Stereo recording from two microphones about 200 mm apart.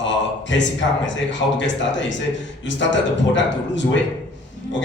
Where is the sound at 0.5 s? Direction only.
65° left (ahead or behind).